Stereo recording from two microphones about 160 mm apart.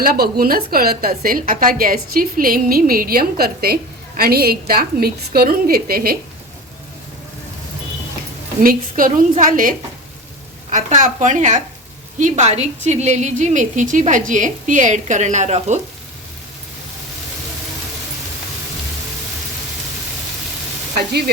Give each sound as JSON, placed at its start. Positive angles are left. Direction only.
{"t": 0.0, "sound": "a woman's voice", "side_deg": -65}
{"t": 8.6, "sound": "a woman's voice", "side_deg": -60}